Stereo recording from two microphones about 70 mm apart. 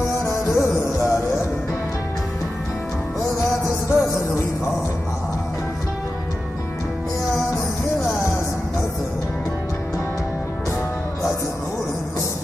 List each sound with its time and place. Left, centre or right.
0.2 s music: left
3.3 s music: left